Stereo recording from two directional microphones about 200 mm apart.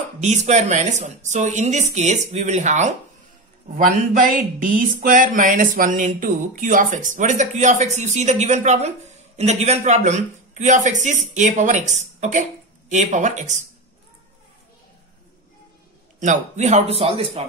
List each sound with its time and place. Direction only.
0.2 s speech: 35° right (ahead or behind)
16.2 s speech: 35° right (ahead or behind)